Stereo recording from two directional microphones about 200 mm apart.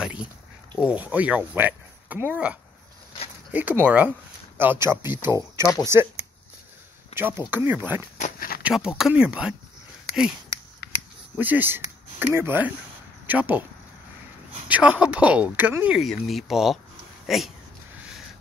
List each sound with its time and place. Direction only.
0.0 s a sound: 5° right (ahead or behind)
0.7 s speech: 5° right (ahead or behind)
3.5 s speech: 10° right (ahead or behind)
7.2 s speech: 10° right (ahead or behind)
8.2 s a sound: 45° left (ahead or behind)
8.6 s speech: 5° right (ahead or behind)
10.8 s a sound: 55° left (ahead or behind)
11.3 s speech: 10° right (ahead or behind)
14.7 s speech: 5° right (ahead or behind)